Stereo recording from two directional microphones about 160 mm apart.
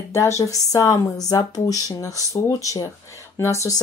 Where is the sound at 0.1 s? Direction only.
20° left (ahead or behind).